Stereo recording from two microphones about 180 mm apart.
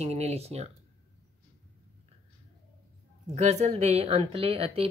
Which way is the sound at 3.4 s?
40° right (ahead or behind).